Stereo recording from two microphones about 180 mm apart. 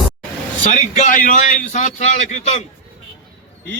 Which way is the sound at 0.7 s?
45° left (ahead or behind).